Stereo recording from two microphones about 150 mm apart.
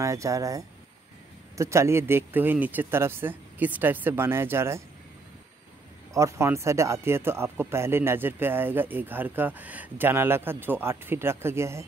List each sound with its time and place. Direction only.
0.0 s speech: 20° right (ahead or behind)
6.1 s speech: 20° right (ahead or behind)